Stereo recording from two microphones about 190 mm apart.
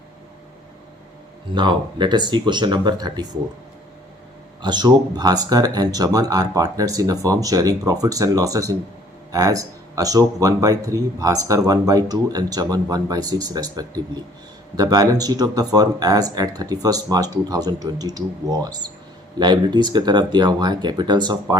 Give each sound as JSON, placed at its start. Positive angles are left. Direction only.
{"t": 1.5, "sound": "speech", "side_deg": -25}
{"t": 4.6, "sound": "speech", "side_deg": -25}